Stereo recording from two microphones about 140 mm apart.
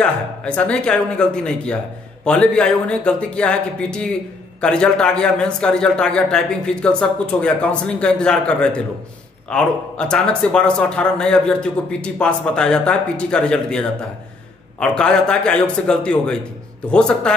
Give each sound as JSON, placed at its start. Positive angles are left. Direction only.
{"t": 0.0, "sound": "speech", "side_deg": 10}